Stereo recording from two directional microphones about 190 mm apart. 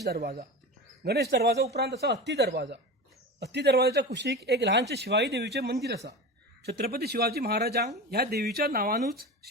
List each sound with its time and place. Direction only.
0.0 s speech: 60° right (ahead or behind)